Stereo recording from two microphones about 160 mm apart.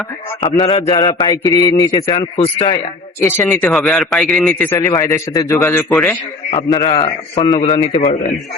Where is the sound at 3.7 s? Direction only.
Centre (ahead or behind).